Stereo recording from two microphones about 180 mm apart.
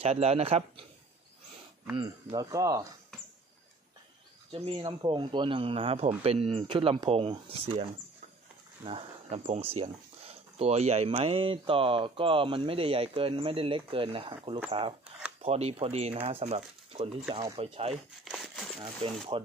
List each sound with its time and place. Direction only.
0.0 s speech: 35° right (ahead or behind)
2.0 s speech: 20° right (ahead or behind)
4.5 s speech: 30° right (ahead or behind)
8.8 s speech: 35° right (ahead or behind)
18.2 s a sound: centre (ahead or behind)
19.3 s speech: 30° right (ahead or behind)